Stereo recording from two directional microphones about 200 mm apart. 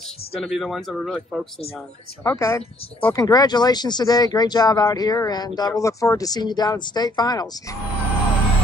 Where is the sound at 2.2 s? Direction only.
10° left (ahead or behind).